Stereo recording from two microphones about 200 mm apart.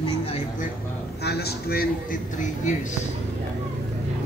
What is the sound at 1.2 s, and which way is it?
A man's voice, 55° left (ahead or behind).